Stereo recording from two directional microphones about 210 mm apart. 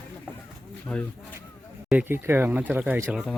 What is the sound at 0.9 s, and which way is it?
Speech, 5° left (ahead or behind).